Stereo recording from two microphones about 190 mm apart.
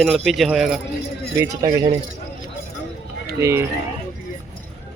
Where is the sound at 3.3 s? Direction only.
15° right (ahead or behind).